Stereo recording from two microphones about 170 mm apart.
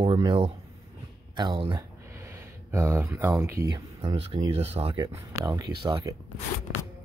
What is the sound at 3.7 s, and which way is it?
Speech, 30° right (ahead or behind).